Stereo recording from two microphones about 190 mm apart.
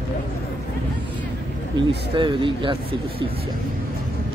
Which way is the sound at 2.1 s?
25° right (ahead or behind).